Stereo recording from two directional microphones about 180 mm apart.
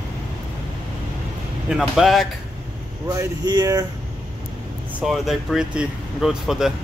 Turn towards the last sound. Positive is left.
turn(degrees=0)  # may be behind; listen again after turning